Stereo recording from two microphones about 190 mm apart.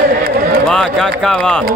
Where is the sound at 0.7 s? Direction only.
Centre (ahead or behind).